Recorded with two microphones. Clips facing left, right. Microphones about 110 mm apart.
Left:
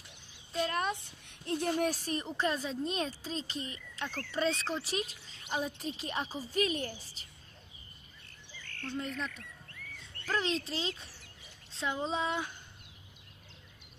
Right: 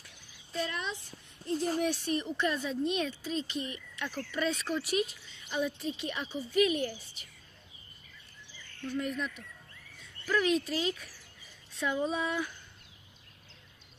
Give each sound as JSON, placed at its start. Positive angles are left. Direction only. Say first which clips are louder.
{"t": 0.5, "sound": "speech", "louder": "left 3 dB", "side_deg": 40}
{"t": 1.2, "sound": "speech", "louder": "right 2 dB", "side_deg": 70}
{"t": 1.8, "sound": "speech", "louder": "right 1 dB", "side_deg": 40}
{"t": 8.9, "sound": "speech", "louder": "right 4 dB", "side_deg": 30}